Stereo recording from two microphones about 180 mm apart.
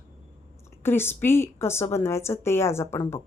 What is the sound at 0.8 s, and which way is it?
A woman's voice, 10° left (ahead or behind).